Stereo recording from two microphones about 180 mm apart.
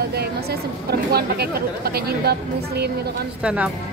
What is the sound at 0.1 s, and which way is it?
Speech, 60° right (ahead or behind).